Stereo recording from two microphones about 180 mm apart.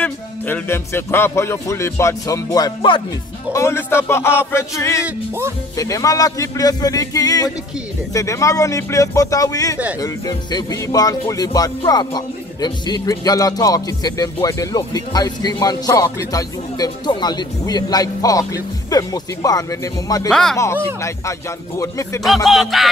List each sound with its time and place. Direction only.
0.0 s speech: 10° left (ahead or behind)
20.2 s speech: 5° left (ahead or behind)
21.0 s speech: 15° left (ahead or behind)
22.2 s speech: centre (ahead or behind)